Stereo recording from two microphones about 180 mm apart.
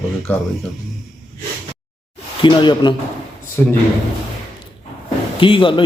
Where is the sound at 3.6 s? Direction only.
10° left (ahead or behind).